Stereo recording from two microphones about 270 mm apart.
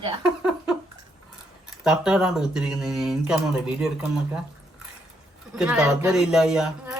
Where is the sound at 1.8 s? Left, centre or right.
Centre.